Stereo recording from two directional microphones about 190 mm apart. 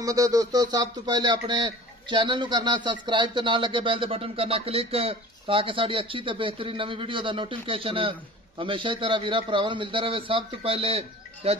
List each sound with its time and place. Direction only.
0.0 s speech: 20° right (ahead or behind)